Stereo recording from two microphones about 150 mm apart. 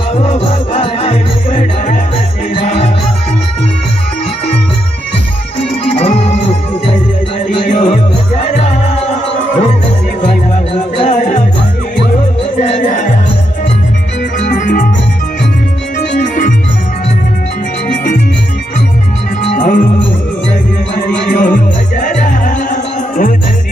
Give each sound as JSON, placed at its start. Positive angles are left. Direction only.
{"t": 0.1, "sound": "music", "side_deg": 45}
{"t": 5.9, "sound": "music", "side_deg": 50}
{"t": 10.2, "sound": "music", "side_deg": 50}
{"t": 12.5, "sound": "music", "side_deg": 50}
{"t": 14.5, "sound": "music", "side_deg": 60}
{"t": 16.2, "sound": "organ", "side_deg": 55}
{"t": 19.5, "sound": "music", "side_deg": 60}
{"t": 21.3, "sound": "music", "side_deg": 60}